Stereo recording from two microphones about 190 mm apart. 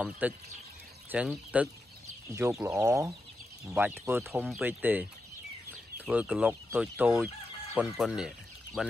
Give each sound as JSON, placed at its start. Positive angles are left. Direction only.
{"t": 0.2, "sound": "fowl", "side_deg": -10}
{"t": 2.7, "sound": "fowl", "side_deg": -15}
{"t": 7.7, "sound": "speech", "side_deg": -5}